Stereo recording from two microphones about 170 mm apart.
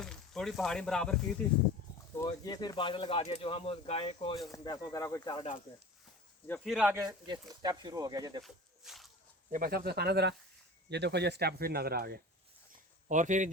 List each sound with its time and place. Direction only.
0.0 s speech: 5° left (ahead or behind)
2.4 s speech: 25° left (ahead or behind)
6.7 s speech: 5° right (ahead or behind)
7.0 s speech: 25° right (ahead or behind)
8.4 s snake: centre (ahead or behind)
9.5 s speech: 55° right (ahead or behind)
13.1 s speech: 45° right (ahead or behind)